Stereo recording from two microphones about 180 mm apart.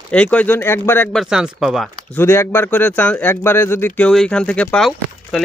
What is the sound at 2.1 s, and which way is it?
Speech, 15° left (ahead or behind).